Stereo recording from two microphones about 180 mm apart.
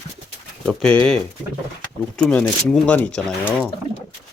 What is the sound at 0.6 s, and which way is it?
Speech, 5° left (ahead or behind).